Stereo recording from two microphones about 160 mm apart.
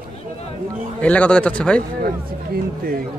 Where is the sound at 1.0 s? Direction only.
10° left (ahead or behind).